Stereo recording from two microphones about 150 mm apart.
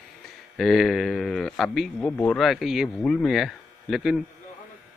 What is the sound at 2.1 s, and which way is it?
Speech, 10° left (ahead or behind).